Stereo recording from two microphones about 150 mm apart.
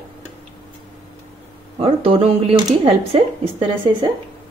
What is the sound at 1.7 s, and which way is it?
A woman's voice, 40° right (ahead or behind).